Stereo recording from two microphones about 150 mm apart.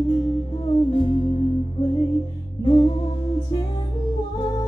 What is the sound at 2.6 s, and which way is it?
Music, 30° left (ahead or behind).